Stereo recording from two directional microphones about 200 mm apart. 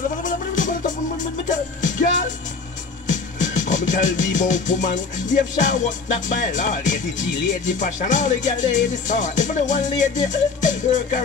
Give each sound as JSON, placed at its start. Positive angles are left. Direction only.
{"t": 0.2, "sound": "music", "side_deg": 40}